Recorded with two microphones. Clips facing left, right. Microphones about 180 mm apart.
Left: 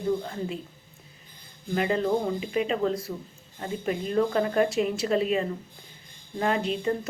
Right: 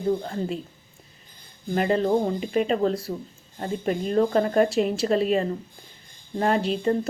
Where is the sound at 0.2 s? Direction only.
40° right (ahead or behind).